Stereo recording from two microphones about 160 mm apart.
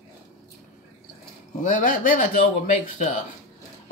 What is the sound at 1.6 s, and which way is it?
Speech, 55° left (ahead or behind).